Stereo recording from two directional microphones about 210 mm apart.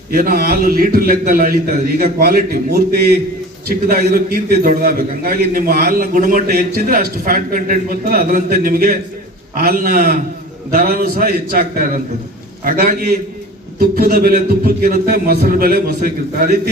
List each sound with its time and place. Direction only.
0.1 s a man's voice: 45° right (ahead or behind)